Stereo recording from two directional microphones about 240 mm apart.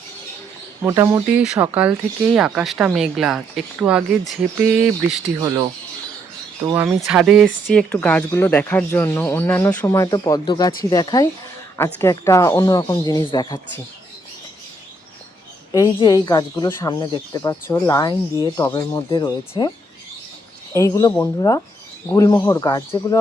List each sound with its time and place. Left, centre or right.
0.8 s speech: centre
6.7 s speech: centre
15.7 s speech: centre
20.7 s speech: centre